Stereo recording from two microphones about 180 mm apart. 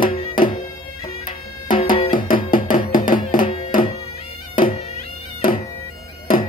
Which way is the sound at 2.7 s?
50° left (ahead or behind).